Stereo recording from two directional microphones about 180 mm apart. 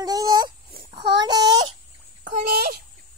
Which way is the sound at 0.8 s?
20° right (ahead or behind).